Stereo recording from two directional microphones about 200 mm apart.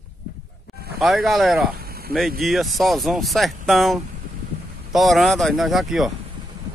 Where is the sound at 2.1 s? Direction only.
50° right (ahead or behind).